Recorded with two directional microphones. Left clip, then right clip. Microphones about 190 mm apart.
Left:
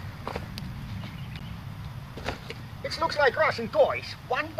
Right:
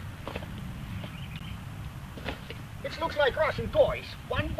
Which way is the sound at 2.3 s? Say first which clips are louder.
Left 3 dB; 30° left (ahead or behind).